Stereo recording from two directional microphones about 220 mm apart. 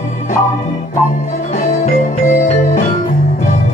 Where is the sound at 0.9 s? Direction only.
35° left (ahead or behind).